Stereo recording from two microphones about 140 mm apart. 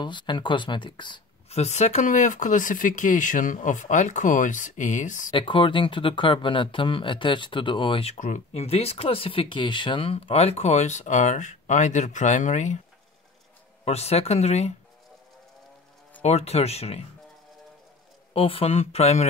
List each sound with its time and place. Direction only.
0.0 s speech: 35° left (ahead or behind)
1.5 s speech: 50° left (ahead or behind)
5.3 s speech: 35° left (ahead or behind); by 12.8 s 60° left (ahead or behind)
13.8 s speech: 50° left (ahead or behind)
16.2 s speech: 50° left (ahead or behind)
18.3 s speech: 40° left (ahead or behind)